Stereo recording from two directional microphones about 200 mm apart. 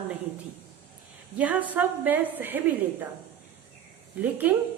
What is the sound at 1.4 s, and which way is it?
A woman's voice, 10° right (ahead or behind).